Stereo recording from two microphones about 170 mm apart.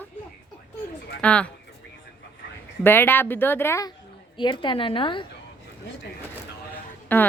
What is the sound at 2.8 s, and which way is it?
Speech, 10° left (ahead or behind).